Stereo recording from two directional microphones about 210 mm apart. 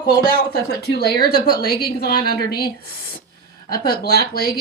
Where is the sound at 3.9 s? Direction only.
45° left (ahead or behind).